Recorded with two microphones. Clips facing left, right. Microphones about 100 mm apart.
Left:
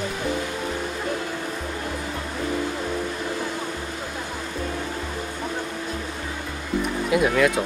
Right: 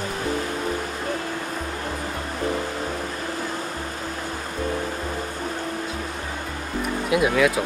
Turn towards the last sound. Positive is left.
turn(degrees=0)  # may be behind; listen again after turning